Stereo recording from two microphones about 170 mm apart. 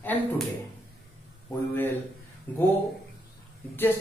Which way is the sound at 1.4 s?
10° left (ahead or behind).